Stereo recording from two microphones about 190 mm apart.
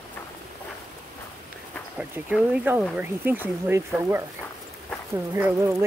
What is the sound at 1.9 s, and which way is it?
Speech, 5° right (ahead or behind).